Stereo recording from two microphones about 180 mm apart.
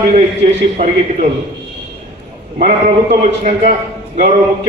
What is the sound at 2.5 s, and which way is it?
A man's voice, 40° right (ahead or behind).